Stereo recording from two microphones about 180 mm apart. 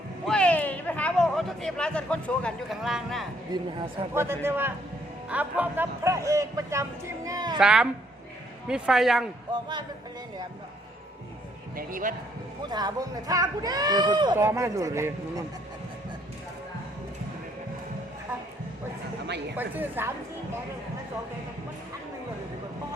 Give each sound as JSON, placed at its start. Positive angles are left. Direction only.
{"t": 0.3, "sound": "speech", "side_deg": 5}
{"t": 4.1, "sound": "speech", "side_deg": -15}
{"t": 7.6, "sound": "a man's voice", "side_deg": -5}
{"t": 9.5, "sound": "speech", "side_deg": -25}
{"t": 11.8, "sound": "a man's voice", "side_deg": -50}
{"t": 12.6, "sound": "speech", "side_deg": -25}
{"t": 19.5, "sound": "speech", "side_deg": -10}